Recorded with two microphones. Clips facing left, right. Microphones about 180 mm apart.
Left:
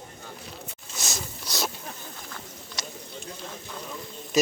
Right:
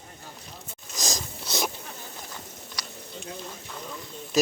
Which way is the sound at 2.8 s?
25° left (ahead or behind).